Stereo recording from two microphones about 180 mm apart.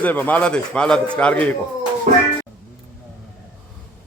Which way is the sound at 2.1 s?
45° right (ahead or behind).